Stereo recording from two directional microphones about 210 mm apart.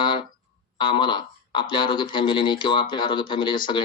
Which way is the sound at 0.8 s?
20° left (ahead or behind).